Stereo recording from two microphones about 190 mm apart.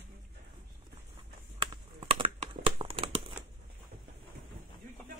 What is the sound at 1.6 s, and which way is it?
Crumpling, 25° right (ahead or behind).